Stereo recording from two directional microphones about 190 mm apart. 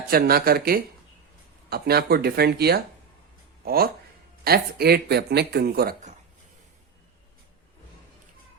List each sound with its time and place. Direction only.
0.1 s speech: 50° right (ahead or behind)